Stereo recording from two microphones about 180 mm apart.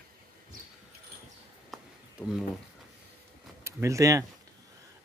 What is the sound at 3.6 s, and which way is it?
Speech, 15° right (ahead or behind).